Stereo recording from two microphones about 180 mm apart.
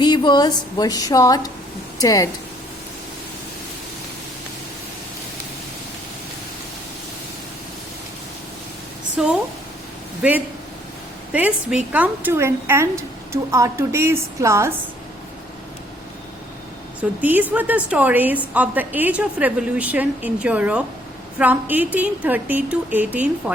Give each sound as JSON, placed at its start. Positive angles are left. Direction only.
{"t": 0.0, "sound": "a woman's voice", "side_deg": 25}
{"t": 10.2, "sound": "a woman's voice", "side_deg": -5}
{"t": 17.0, "sound": "a woman's voice", "side_deg": -10}